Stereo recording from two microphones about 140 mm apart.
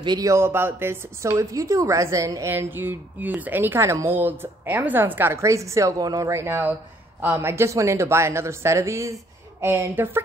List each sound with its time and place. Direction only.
0.0 s a woman's voice: 30° right (ahead or behind)